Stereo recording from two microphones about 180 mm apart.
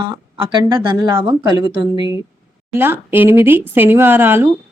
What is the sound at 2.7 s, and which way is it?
Speech, 15° right (ahead or behind).